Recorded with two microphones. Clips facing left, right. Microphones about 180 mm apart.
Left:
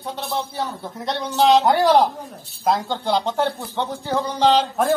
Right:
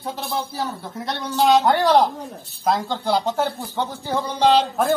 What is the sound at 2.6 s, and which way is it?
Speech, centre (ahead or behind).